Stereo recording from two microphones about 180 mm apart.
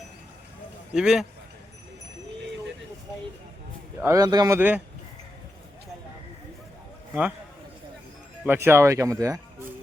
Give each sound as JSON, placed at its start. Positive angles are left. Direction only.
{"t": 0.9, "sound": "speech", "side_deg": -5}
{"t": 4.0, "sound": "speech", "side_deg": -20}
{"t": 7.1, "sound": "a man's voice", "side_deg": -10}
{"t": 8.4, "sound": "speech", "side_deg": -10}